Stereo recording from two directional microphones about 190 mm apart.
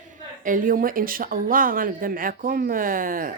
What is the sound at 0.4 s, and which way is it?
Speech, 45° right (ahead or behind).